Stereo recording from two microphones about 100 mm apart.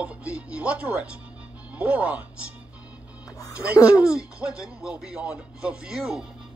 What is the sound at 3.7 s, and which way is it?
Speech, 35° left (ahead or behind).